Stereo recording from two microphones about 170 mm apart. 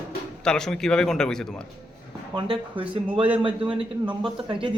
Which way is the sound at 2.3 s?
30° right (ahead or behind).